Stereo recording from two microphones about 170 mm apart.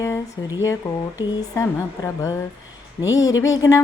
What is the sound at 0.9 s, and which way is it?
Speech, 15° left (ahead or behind).